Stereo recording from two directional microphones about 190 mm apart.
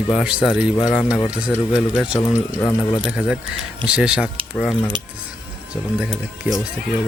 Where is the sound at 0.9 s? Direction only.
5° left (ahead or behind).